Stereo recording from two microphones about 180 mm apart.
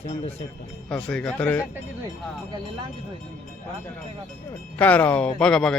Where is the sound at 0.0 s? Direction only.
35° left (ahead or behind).